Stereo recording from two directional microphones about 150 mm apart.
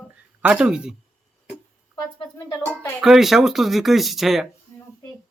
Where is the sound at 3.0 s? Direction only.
Centre (ahead or behind).